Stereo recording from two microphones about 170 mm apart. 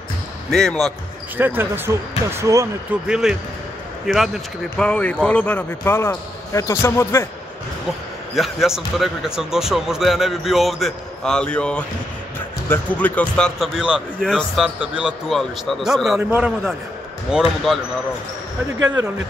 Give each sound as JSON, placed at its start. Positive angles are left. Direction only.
{"t": 0.5, "sound": "speech", "side_deg": 0}
{"t": 1.4, "sound": "speech", "side_deg": -10}
{"t": 3.1, "sound": "speech", "side_deg": -5}
{"t": 8.4, "sound": "speech", "side_deg": 0}
{"t": 18.8, "sound": "speech", "side_deg": -20}